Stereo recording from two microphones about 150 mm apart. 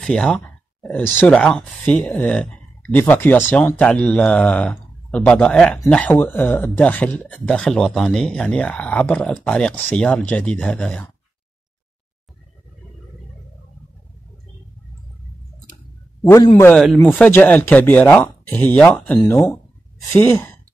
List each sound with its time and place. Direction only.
0.0 s speech: 5° left (ahead or behind)
16.3 s a man's voice: 25° left (ahead or behind)
16.6 s speech: 5° left (ahead or behind)
20.2 s speech: 15° left (ahead or behind)